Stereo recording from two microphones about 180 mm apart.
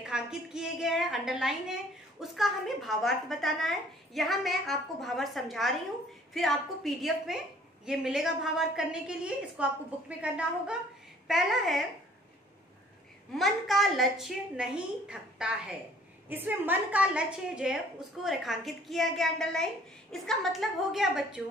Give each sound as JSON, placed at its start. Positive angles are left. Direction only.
{"t": 0.0, "sound": "a woman's voice", "side_deg": -5}
{"t": 13.4, "sound": "a woman's voice", "side_deg": 0}